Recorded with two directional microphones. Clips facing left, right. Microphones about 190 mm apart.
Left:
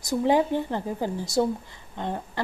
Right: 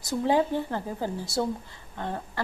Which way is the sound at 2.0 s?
20° left (ahead or behind).